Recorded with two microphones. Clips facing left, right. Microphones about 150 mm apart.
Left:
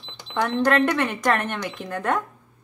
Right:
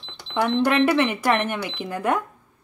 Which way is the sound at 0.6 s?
10° right (ahead or behind).